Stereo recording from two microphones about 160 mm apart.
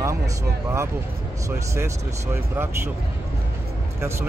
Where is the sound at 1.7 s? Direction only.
15° right (ahead or behind).